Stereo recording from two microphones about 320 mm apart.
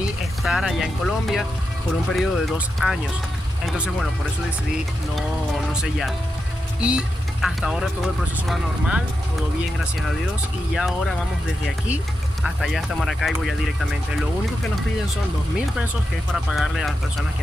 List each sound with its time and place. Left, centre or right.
0.4 s speech: centre
5.7 s speech: centre
10.7 s speech: centre
12.4 s speech: centre
16.5 s speech: centre